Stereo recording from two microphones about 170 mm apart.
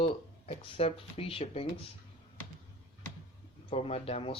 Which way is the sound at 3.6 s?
35° left (ahead or behind).